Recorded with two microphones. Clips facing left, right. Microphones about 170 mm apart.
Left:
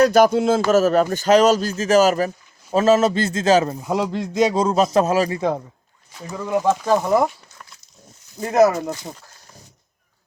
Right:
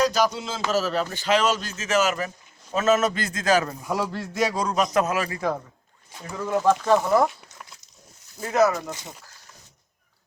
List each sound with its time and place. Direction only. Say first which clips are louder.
0.0 s a man's voice: left 8 dB; 55° left (ahead or behind); by 5.5 s 25° left (ahead or behind)
6.5 s speech: left 2 dB; 10° left (ahead or behind)
8.5 s speech: left 5 dB; 40° left (ahead or behind)